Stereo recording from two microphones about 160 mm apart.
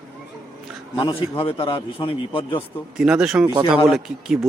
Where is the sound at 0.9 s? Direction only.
30° left (ahead or behind).